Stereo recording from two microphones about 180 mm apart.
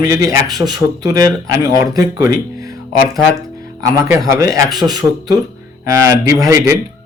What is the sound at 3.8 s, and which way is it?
Speech, 20° right (ahead or behind).